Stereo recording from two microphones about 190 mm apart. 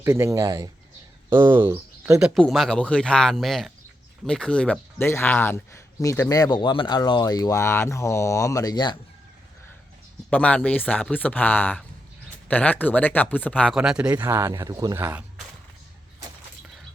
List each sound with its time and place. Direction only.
0.0 s speech: 15° right (ahead or behind)
2.2 s speech: centre (ahead or behind); by 9.0 s 20° left (ahead or behind)
10.2 s speech: 5° left (ahead or behind)
13.7 s speech: 5° right (ahead or behind)